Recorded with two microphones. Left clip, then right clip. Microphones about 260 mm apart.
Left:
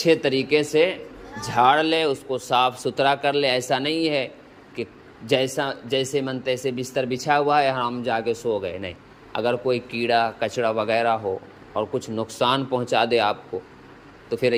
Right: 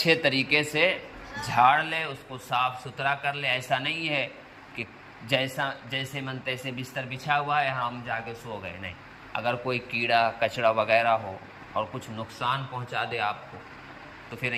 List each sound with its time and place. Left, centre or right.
0.0 s a man's voice: centre